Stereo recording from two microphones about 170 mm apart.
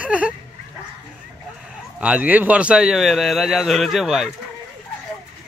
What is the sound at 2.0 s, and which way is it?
A man's voice, 5° right (ahead or behind).